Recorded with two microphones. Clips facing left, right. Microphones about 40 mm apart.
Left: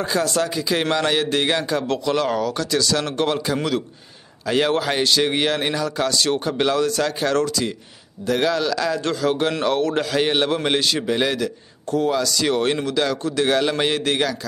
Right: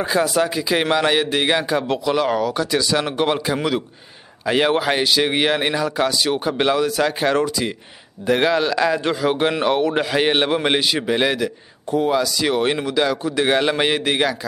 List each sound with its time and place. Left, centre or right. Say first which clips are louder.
0.0 s a man's voice: right 3 dB; centre